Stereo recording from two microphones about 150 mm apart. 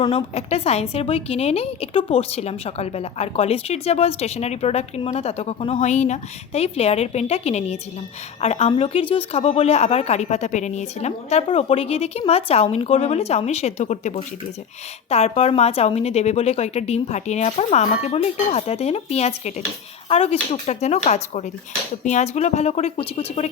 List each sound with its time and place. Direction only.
0.0 s a woman's voice: 35° left (ahead or behind)